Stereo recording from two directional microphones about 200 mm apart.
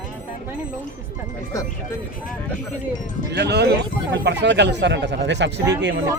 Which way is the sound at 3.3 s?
55° right (ahead or behind).